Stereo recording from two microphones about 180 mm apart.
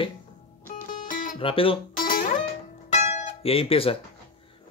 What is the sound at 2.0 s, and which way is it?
Music, 50° left (ahead or behind).